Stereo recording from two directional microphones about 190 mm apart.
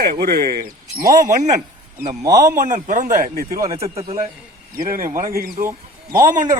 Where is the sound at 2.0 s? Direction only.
40° right (ahead or behind).